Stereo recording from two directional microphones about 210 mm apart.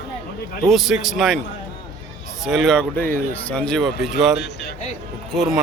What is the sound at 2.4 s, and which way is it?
A man's voice, centre (ahead or behind).